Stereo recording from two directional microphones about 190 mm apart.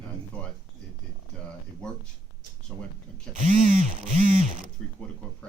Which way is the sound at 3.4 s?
40° right (ahead or behind).